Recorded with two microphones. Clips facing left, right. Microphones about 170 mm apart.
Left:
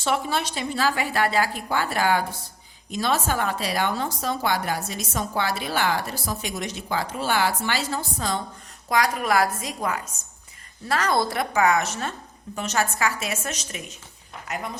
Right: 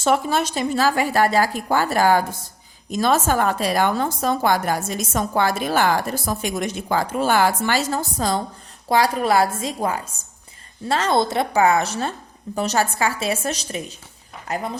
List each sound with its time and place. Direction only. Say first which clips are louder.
0.0 s a woman's voice: right 5 dB; 45° right (ahead or behind)